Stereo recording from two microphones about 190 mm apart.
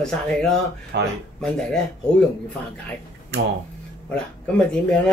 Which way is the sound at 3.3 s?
65° right (ahead or behind).